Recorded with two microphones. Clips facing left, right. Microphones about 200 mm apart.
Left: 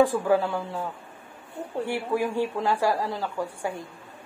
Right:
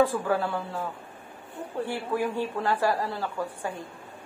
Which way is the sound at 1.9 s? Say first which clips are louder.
Left 3 dB; 15° left (ahead or behind).